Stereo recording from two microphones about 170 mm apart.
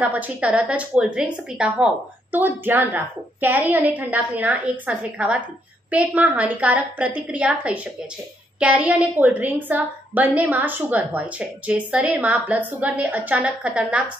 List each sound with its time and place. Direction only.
0.0 s a woman's voice: 10° right (ahead or behind)